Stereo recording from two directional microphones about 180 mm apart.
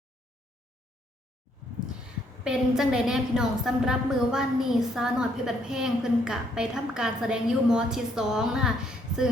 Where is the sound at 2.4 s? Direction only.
5° right (ahead or behind).